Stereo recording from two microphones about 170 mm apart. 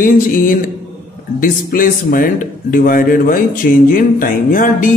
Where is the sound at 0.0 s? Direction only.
55° left (ahead or behind).